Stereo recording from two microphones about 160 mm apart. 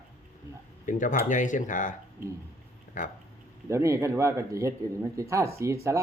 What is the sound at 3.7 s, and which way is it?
Speech, 20° right (ahead or behind).